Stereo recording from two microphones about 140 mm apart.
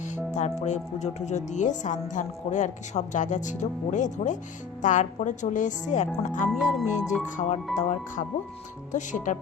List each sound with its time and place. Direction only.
0.3 s speech: 55° left (ahead or behind)